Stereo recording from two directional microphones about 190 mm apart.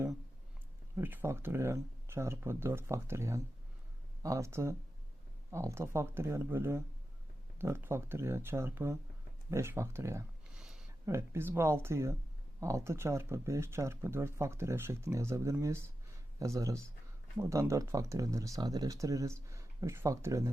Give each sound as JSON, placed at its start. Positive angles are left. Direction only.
{"t": 0.9, "sound": "speech", "side_deg": -10}
{"t": 10.5, "sound": "a sound", "side_deg": -5}
{"t": 11.0, "sound": "speech", "side_deg": -15}